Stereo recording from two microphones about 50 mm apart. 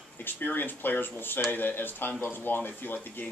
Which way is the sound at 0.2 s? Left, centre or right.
Left.